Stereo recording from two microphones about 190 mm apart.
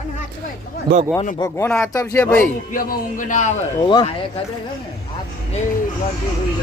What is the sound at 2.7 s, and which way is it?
Speech, 45° left (ahead or behind).